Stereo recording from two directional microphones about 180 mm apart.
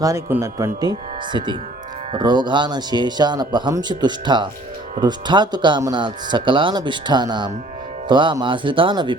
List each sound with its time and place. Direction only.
0.0 s speech: 15° right (ahead or behind)